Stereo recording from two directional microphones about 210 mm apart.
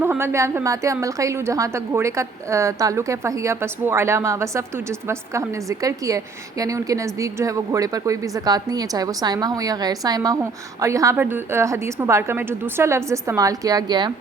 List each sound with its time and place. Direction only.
0.0 s a woman's voice: 10° right (ahead or behind)